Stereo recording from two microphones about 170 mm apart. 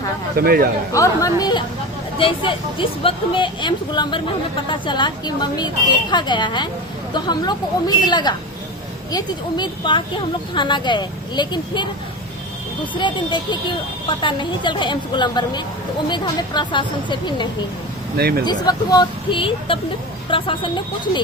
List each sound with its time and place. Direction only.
0.3 s speech: 60° right (ahead or behind)
0.9 s speech: 20° left (ahead or behind)
18.2 s speech: 65° right (ahead or behind)
18.4 s speech: 25° left (ahead or behind)